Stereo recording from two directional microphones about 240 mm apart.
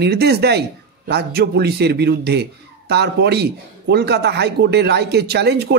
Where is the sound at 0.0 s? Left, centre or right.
Right.